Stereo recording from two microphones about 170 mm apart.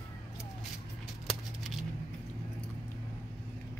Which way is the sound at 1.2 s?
Centre (ahead or behind).